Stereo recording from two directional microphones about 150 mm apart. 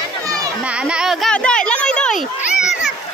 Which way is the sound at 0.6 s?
5° right (ahead or behind).